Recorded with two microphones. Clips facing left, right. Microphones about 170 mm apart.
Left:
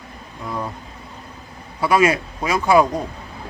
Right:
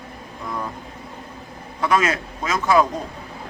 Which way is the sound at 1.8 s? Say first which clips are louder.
Left 4 dB; 10° left (ahead or behind).